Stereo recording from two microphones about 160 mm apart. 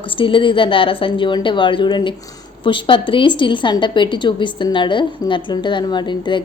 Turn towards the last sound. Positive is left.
turn(degrees=30)  # may be behind; listen again after turning